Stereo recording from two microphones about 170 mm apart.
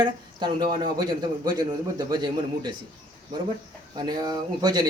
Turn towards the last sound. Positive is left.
turn(degrees=-25)  # may be behind; listen again after turning